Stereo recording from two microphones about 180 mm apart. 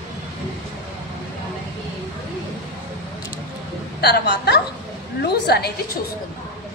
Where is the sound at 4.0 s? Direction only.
65° left (ahead or behind).